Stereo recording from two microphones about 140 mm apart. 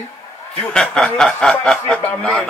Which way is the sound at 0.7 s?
5° left (ahead or behind).